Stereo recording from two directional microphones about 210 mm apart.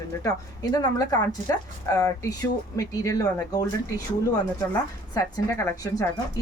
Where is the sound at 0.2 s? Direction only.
20° left (ahead or behind).